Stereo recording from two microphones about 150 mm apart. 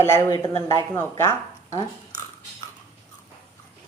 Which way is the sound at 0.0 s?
20° left (ahead or behind).